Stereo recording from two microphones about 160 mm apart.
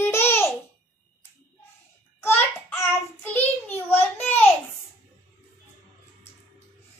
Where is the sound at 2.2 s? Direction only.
15° left (ahead or behind).